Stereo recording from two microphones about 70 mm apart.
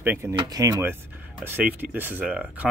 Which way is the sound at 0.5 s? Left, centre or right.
Right.